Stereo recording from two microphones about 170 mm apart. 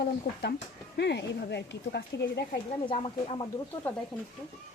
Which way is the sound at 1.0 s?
90° left.